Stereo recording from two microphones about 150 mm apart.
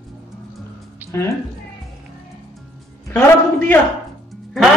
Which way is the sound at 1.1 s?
20° left (ahead or behind).